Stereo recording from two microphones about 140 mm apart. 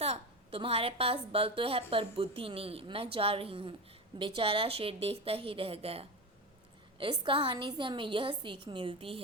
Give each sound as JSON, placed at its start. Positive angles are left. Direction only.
{"t": 0.0, "sound": "a woman's voice", "side_deg": -45}